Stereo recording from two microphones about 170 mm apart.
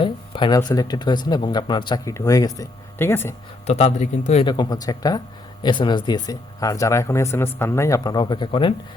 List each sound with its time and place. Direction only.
0.0 s speech: 30° left (ahead or behind)
3.7 s a man's voice: 40° left (ahead or behind)
4.4 s speech: 25° left (ahead or behind)